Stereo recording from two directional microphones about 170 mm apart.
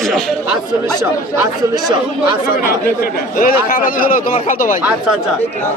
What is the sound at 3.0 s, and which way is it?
Speech, 60° left (ahead or behind).